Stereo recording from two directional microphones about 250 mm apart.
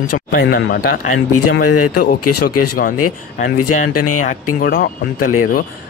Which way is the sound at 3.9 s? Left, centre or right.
Left.